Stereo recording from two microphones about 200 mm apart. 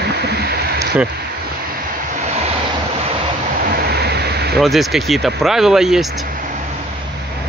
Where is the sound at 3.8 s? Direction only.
55° right (ahead or behind).